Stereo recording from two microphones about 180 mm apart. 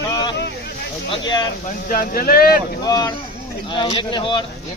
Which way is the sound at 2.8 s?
20° left (ahead or behind).